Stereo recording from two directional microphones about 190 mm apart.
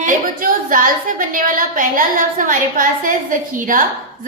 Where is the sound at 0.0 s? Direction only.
45° right (ahead or behind).